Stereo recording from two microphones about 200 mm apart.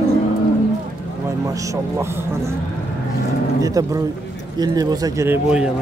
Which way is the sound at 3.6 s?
15° right (ahead or behind).